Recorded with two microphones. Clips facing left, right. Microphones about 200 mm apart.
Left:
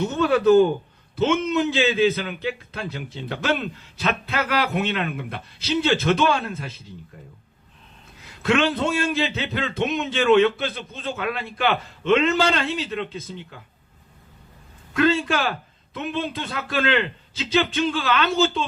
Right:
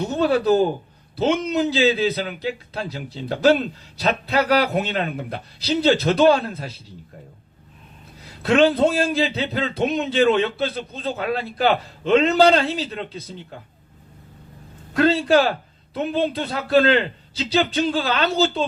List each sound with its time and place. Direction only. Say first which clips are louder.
0.0 s a man's voice: even; 35° right (ahead or behind)
8.2 s a man's voice: right 4 dB; 35° right (ahead or behind)
14.9 s a man's voice: right 4 dB; 35° right (ahead or behind)